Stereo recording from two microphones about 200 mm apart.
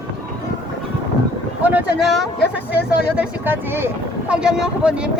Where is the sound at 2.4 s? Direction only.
55° left (ahead or behind).